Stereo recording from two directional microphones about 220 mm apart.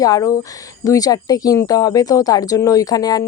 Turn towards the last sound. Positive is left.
turn(degrees=15)  # may be behind; listen again after turning